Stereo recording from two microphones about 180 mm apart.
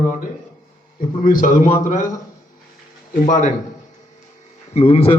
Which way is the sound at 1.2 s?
50° left (ahead or behind).